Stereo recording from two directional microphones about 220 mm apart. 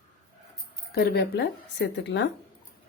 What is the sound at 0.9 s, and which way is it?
Speech, 45° left (ahead or behind).